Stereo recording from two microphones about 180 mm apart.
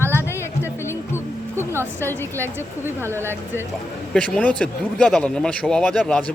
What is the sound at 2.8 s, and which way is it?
Speech, 15° right (ahead or behind).